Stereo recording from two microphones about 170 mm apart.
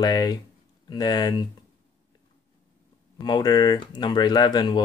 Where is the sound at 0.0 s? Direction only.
25° left (ahead or behind).